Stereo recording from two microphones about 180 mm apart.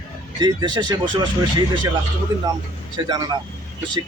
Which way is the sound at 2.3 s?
20° right (ahead or behind).